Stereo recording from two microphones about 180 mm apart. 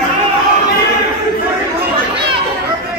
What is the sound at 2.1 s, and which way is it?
Children playing, 30° right (ahead or behind).